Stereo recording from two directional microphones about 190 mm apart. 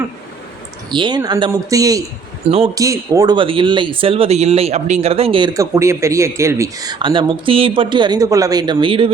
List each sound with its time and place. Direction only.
0.9 s speech: 25° right (ahead or behind)